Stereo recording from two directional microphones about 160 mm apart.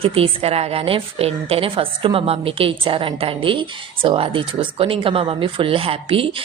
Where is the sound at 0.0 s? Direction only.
35° right (ahead or behind).